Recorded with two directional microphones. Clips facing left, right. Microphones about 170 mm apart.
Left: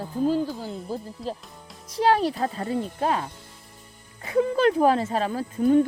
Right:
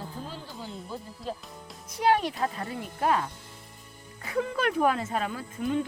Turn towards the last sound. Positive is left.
turn(degrees=45)  # may be behind; listen again after turning